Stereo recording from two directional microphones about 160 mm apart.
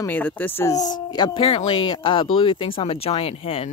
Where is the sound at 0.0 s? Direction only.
10° left (ahead or behind).